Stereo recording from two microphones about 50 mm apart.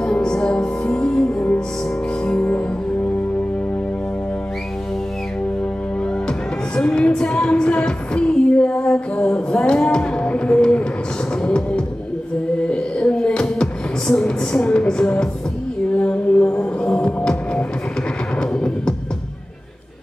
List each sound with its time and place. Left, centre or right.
0.0 s music: centre
6.8 s music: centre
9.5 s a sound: centre
11.4 s music: centre
12.6 s a sound: centre
16.0 s music: left
18.5 s music: centre